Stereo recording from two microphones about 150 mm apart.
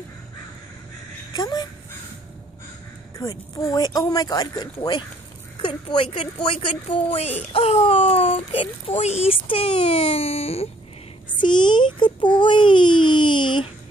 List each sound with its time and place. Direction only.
1.3 s crow: 25° left (ahead or behind)
3.2 s a woman's voice: 25° left (ahead or behind); by 10.7 s 40° left (ahead or behind)
11.3 s baby cry: 30° left (ahead or behind)